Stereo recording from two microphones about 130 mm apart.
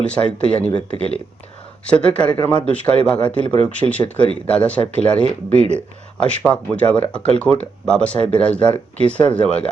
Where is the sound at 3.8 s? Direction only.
25° right (ahead or behind).